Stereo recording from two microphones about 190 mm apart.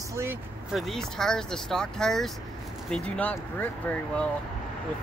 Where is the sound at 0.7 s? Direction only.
Centre (ahead or behind).